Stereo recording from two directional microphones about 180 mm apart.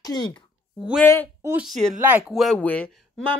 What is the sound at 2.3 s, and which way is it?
Speech, centre (ahead or behind).